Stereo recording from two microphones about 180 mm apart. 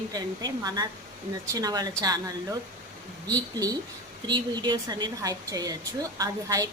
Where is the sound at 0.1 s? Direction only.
20° right (ahead or behind).